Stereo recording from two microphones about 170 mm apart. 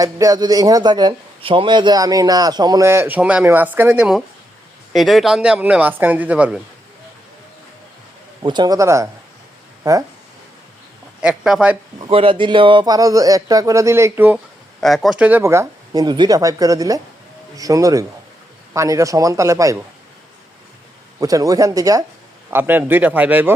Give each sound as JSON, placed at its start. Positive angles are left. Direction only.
{"t": 0.0, "sound": "speech", "side_deg": -20}
{"t": 8.4, "sound": "speech", "side_deg": -25}
{"t": 11.2, "sound": "speech", "side_deg": -5}
{"t": 12.0, "sound": "speech", "side_deg": -35}
{"t": 14.8, "sound": "speech", "side_deg": 0}
{"t": 21.2, "sound": "speech", "side_deg": -20}